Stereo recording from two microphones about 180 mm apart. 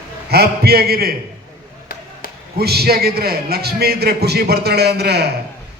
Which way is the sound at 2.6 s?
60° right (ahead or behind).